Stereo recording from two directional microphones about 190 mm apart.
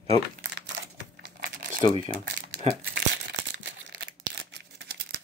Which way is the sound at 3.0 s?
70° right (ahead or behind).